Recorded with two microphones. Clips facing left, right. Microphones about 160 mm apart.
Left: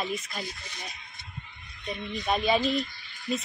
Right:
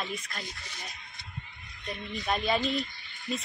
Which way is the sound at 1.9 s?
10° left (ahead or behind).